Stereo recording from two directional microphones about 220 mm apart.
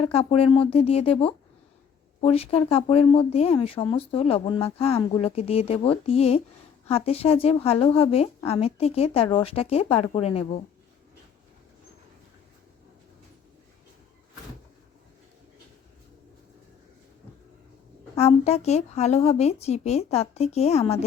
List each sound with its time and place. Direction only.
0.0 s speech: 25° left (ahead or behind)
18.2 s speech: 30° left (ahead or behind)